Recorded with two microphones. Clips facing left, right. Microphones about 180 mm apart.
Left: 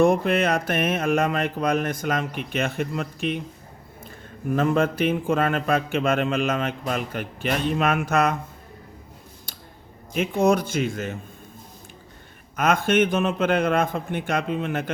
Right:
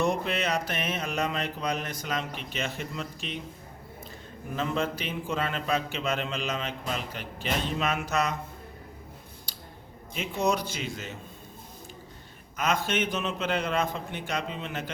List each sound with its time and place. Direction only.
0.0 s a man's voice: 55° left (ahead or behind)
4.5 s a man's voice: 55° left (ahead or behind)
9.5 s scissors: 50° left (ahead or behind)
10.2 s a man's voice: 50° left (ahead or behind)
12.5 s a man's voice: 55° left (ahead or behind)